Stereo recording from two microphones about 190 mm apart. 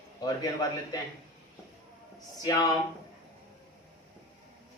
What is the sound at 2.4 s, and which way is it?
Speech, 20° left (ahead or behind).